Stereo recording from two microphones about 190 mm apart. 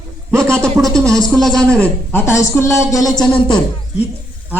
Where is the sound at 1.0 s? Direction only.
15° right (ahead or behind).